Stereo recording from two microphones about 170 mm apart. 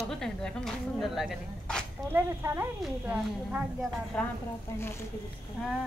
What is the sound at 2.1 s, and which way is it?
A woman's voice, 15° right (ahead or behind).